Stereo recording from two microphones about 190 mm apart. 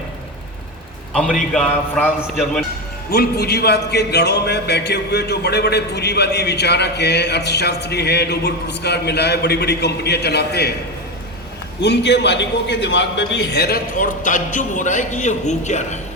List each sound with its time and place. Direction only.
1.1 s a man's voice: centre (ahead or behind)
3.1 s a man's voice: 55° left (ahead or behind)
11.8 s a man's voice: 65° left (ahead or behind); by 16.0 s 40° left (ahead or behind)